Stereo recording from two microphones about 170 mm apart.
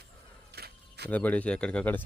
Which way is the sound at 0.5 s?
70° right (ahead or behind).